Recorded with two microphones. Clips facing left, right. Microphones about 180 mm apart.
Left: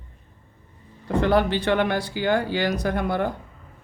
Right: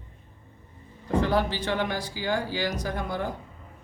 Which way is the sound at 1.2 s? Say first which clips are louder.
Left 5 dB; 65° left (ahead or behind).